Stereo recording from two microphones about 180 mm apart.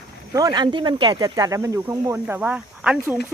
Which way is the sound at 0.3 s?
20° right (ahead or behind).